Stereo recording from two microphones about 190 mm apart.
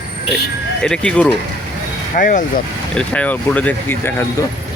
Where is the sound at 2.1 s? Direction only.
45° left (ahead or behind).